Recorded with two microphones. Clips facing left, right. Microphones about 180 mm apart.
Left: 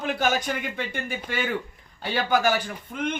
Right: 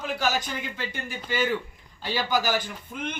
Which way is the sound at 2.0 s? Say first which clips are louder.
Left 3 dB; 55° left (ahead or behind).